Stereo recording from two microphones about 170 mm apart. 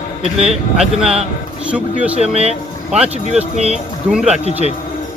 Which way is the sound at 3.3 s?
40° right (ahead or behind).